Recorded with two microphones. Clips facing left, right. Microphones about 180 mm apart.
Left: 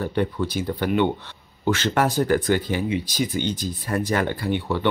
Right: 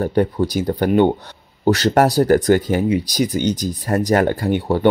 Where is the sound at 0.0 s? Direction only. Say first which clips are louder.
Right 6 dB; 45° right (ahead or behind).